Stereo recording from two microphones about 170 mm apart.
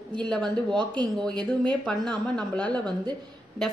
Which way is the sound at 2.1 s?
5° left (ahead or behind).